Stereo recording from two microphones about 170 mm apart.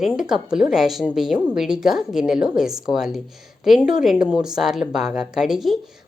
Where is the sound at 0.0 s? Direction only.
5° right (ahead or behind).